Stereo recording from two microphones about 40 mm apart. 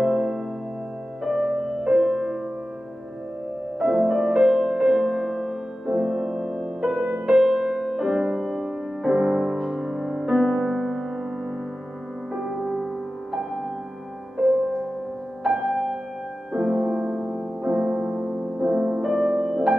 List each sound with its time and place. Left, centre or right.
0.0 s music: centre
3.8 s music: centre
9.0 s music: centre
12.4 s music: centre
19.0 s music: centre